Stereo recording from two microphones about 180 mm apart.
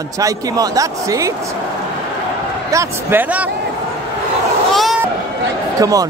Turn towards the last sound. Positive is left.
turn(degrees=-20)  # may be behind; listen again after turning